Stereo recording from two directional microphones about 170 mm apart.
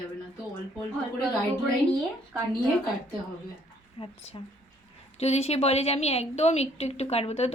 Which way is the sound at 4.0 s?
30° left (ahead or behind).